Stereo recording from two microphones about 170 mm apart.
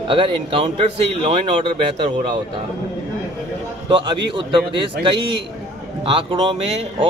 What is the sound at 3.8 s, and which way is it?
Speech, 25° right (ahead or behind).